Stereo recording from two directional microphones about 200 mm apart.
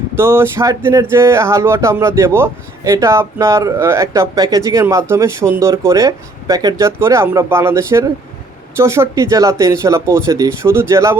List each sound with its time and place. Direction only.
0.2 s speech: 10° right (ahead or behind)